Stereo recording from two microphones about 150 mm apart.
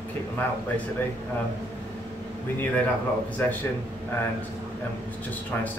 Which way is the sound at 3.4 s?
10° left (ahead or behind).